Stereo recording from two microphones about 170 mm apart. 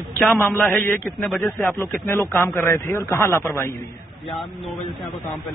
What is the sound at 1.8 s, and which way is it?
Speech, 15° left (ahead or behind).